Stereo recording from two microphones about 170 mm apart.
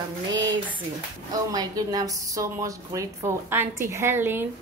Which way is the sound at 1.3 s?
20° right (ahead or behind).